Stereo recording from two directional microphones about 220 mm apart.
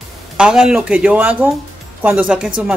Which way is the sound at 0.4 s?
5° right (ahead or behind).